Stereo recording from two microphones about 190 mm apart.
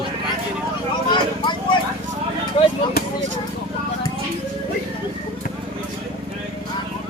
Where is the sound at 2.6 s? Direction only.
30° left (ahead or behind).